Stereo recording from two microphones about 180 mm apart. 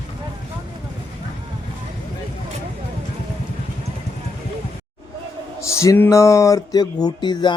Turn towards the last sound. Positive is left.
turn(degrees=25)  # may be behind; listen again after turning